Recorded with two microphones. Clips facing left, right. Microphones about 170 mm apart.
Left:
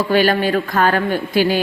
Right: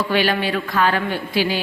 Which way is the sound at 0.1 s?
45° left (ahead or behind).